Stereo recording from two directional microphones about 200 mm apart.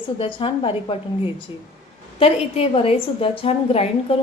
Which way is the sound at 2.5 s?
30° left (ahead or behind).